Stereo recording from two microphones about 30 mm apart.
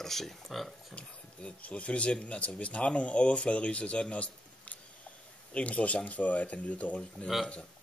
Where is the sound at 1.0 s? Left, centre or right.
Left.